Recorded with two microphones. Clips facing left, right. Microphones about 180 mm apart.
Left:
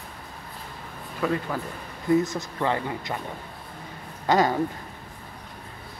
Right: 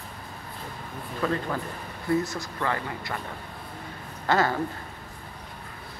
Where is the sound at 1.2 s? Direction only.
10° left (ahead or behind).